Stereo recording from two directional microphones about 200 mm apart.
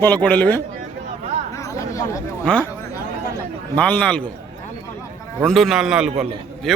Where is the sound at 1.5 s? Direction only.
15° left (ahead or behind).